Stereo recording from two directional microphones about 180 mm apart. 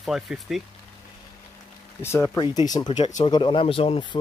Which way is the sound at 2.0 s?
15° left (ahead or behind).